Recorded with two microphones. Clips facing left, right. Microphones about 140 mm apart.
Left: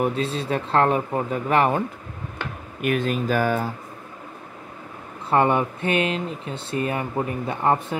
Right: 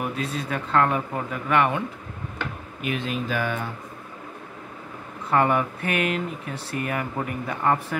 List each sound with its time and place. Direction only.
0.0 s speech: 30° left (ahead or behind)
2.8 s speech: 50° left (ahead or behind)
5.3 s speech: 30° left (ahead or behind)